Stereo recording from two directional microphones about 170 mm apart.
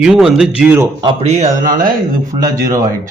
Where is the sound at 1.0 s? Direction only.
40° right (ahead or behind).